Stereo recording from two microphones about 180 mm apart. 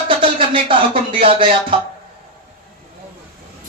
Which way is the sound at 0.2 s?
30° right (ahead or behind).